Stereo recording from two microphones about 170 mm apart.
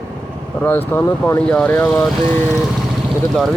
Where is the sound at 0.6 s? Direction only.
10° left (ahead or behind).